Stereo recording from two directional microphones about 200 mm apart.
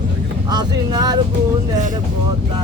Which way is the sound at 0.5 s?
20° right (ahead or behind).